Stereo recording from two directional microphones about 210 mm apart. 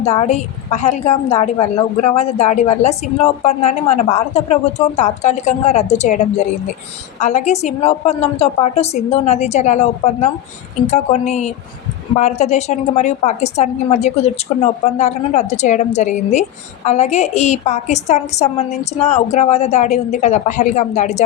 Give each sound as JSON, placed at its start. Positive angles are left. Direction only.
{"t": 0.0, "sound": "a woman's voice", "side_deg": 30}